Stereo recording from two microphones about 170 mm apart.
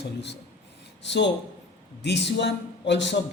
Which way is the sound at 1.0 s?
90° left.